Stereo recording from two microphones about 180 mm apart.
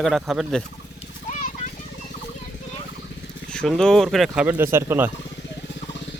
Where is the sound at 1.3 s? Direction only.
45° left (ahead or behind).